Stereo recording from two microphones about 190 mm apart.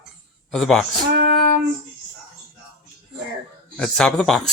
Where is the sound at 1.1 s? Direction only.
60° right (ahead or behind).